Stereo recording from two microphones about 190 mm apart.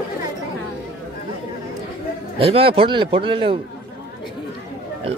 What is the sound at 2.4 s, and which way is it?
A man's voice, 30° right (ahead or behind).